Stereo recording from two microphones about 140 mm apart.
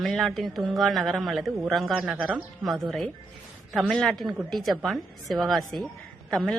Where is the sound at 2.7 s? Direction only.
Centre (ahead or behind).